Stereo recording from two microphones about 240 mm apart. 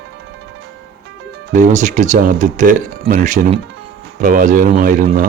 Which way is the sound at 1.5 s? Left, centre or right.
Right.